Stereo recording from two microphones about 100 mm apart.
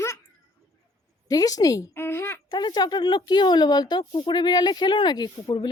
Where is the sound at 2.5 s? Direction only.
45° left (ahead or behind).